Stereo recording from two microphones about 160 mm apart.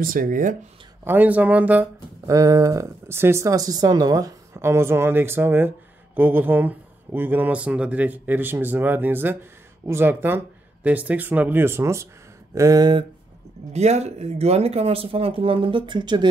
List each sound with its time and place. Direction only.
0.0 s speech: 60° right (ahead or behind)
1.0 s speech: 10° right (ahead or behind)
2.2 s speech: 20° right (ahead or behind)
13.7 s speech: 45° right (ahead or behind); by 16.3 s 30° right (ahead or behind)